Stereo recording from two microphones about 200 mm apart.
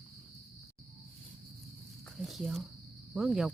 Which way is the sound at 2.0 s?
Centre (ahead or behind).